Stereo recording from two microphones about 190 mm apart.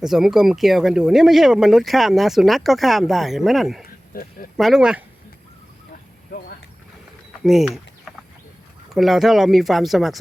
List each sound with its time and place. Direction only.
0.0 s speech: centre (ahead or behind)
4.1 s speech: 50° left (ahead or behind)
4.5 s speech: centre (ahead or behind)
7.4 s speech: centre (ahead or behind)